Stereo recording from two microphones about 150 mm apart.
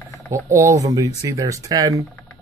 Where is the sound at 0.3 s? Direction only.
20° right (ahead or behind).